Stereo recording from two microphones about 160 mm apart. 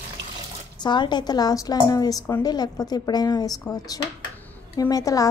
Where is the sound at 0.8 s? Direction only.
30° left (ahead or behind).